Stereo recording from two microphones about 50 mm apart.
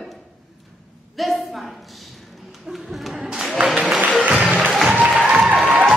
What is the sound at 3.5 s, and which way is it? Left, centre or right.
Applause, right.